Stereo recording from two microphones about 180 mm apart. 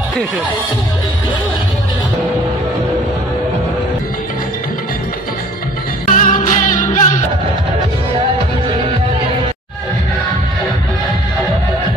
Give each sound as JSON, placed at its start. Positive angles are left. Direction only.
{"t": 6.0, "sound": "music", "side_deg": 45}